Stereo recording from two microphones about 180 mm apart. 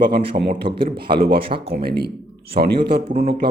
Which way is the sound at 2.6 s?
50° right (ahead or behind).